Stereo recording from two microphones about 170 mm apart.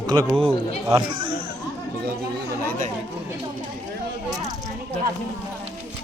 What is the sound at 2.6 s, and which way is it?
Chatter, 50° right (ahead or behind).